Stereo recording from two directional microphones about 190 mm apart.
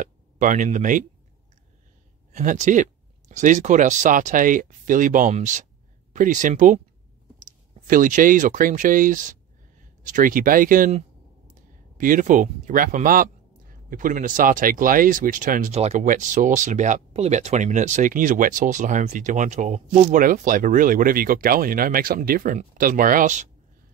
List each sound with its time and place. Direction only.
0.0 s speech: 45° right (ahead or behind)
2.3 s speech: 40° right (ahead or behind)